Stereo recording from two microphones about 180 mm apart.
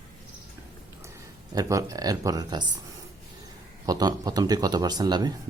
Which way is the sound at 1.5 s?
20° right (ahead or behind).